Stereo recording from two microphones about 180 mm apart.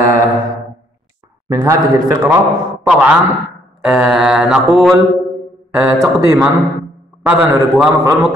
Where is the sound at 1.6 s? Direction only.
20° right (ahead or behind).